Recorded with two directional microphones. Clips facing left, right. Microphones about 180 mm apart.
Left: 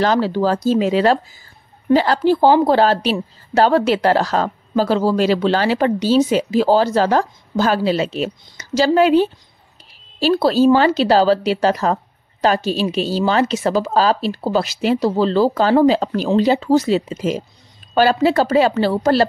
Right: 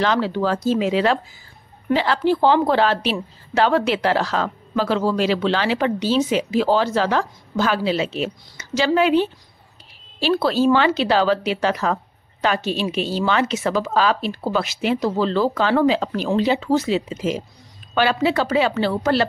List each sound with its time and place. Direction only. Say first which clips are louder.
0.0 s a woman's voice: left 4 dB; 40° left (ahead or behind)